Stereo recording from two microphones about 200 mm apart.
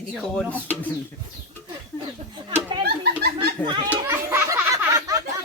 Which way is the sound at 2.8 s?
55° right (ahead or behind).